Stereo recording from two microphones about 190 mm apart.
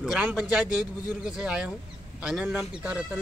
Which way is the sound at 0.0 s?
5° right (ahead or behind).